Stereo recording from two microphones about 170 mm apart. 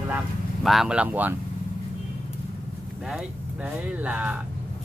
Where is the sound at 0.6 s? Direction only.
5° right (ahead or behind).